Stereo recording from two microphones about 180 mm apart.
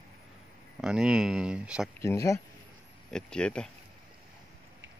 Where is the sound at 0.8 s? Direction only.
5° right (ahead or behind).